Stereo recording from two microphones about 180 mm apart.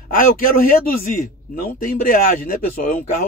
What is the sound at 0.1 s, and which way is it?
A man's voice, 50° left (ahead or behind).